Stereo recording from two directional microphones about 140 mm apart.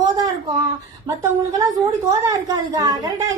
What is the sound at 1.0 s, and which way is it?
A woman's voice, 20° right (ahead or behind).